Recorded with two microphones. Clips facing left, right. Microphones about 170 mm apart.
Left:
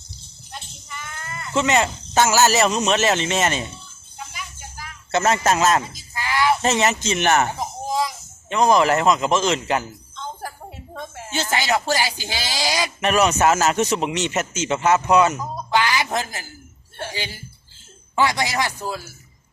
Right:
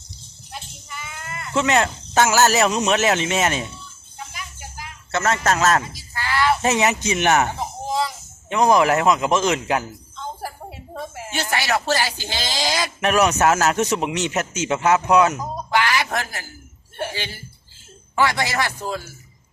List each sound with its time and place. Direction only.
0.5 s speech: 5° right (ahead or behind)
5.1 s a man's voice: 20° left (ahead or behind)
5.5 s speech: 5° left (ahead or behind)
5.9 s a sound: 15° left (ahead or behind)
6.6 s speech: 10° right (ahead or behind)
7.4 s a sound: 15° left (ahead or behind)
8.4 s a sound: 10° right (ahead or behind)
11.5 s speech: 15° left (ahead or behind)
13.0 s speech: 5° right (ahead or behind)
15.7 s music: 20° left (ahead or behind)
17.1 s speech: 15° left (ahead or behind)